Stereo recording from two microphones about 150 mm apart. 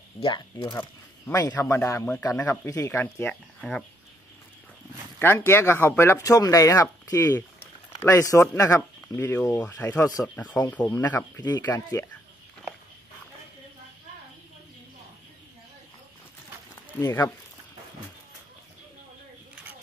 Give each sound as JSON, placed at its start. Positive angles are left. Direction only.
{"t": 0.2, "sound": "speech", "side_deg": 30}
{"t": 0.7, "sound": "a sound", "side_deg": 15}
{"t": 1.5, "sound": "speech", "side_deg": 15}
{"t": 3.3, "sound": "speech", "side_deg": 5}
{"t": 5.2, "sound": "speech", "side_deg": 15}
{"t": 17.0, "sound": "speech", "side_deg": 20}